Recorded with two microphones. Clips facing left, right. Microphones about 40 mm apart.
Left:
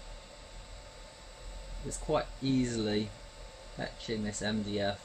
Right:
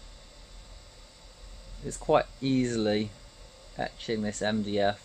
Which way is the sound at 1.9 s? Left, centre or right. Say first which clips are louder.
Right 7 dB; right.